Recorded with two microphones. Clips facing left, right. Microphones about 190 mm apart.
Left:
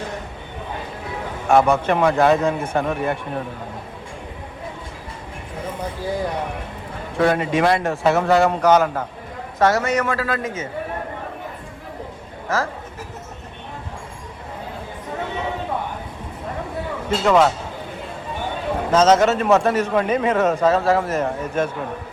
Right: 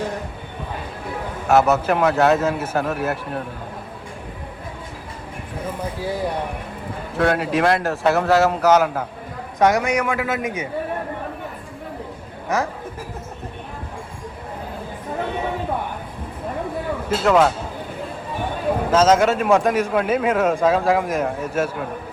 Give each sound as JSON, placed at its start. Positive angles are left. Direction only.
{"t": 1.5, "sound": "a man's voice", "side_deg": -5}
{"t": 5.8, "sound": "a man's voice", "side_deg": -5}
{"t": 12.5, "sound": "speech", "side_deg": -15}
{"t": 17.1, "sound": "speech", "side_deg": -5}
{"t": 18.9, "sound": "speech", "side_deg": -5}